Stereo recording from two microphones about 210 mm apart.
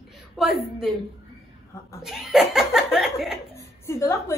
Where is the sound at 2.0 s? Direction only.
Centre (ahead or behind).